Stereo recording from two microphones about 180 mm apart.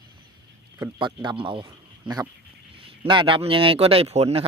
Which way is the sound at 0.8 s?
25° right (ahead or behind).